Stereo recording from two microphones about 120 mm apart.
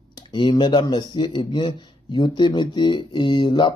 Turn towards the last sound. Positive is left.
turn(degrees=40)  # may be behind; listen again after turning